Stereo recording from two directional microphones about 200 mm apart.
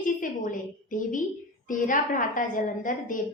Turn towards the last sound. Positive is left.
turn(degrees=40)  # may be behind; listen again after turning